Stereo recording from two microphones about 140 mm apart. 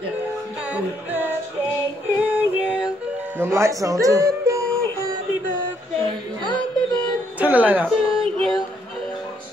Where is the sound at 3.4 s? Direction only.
20° right (ahead or behind).